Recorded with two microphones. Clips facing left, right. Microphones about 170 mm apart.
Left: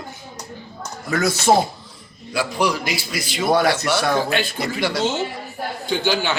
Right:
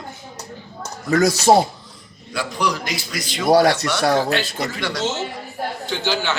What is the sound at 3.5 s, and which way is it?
Speech, 35° right (ahead or behind).